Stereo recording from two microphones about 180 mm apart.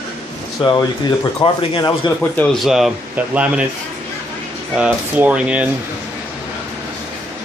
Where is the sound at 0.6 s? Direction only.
30° left (ahead or behind).